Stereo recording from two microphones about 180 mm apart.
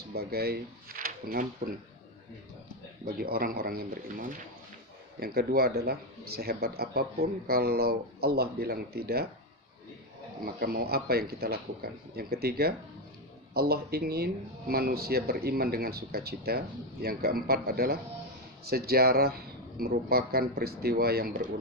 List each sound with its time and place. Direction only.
0.1 s speech: 60° right (ahead or behind)
3.1 s speech: 55° right (ahead or behind)
10.4 s speech: 55° right (ahead or behind)